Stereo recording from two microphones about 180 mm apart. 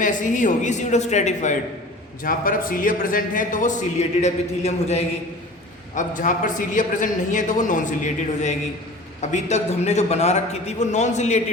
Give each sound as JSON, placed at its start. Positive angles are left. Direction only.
{"t": 0.0, "sound": "a man's voice", "side_deg": 45}